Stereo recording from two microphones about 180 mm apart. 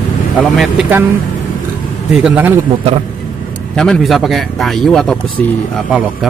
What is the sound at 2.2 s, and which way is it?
Speech, 10° right (ahead or behind).